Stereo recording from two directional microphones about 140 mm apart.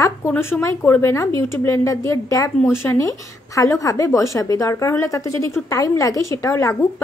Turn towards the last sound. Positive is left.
turn(degrees=20)  # may be behind; listen again after turning